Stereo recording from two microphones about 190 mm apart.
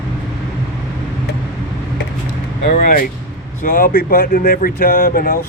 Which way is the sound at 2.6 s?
45° left (ahead or behind).